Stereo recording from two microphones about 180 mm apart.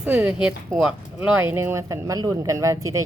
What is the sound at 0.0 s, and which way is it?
Speech, 5° right (ahead or behind).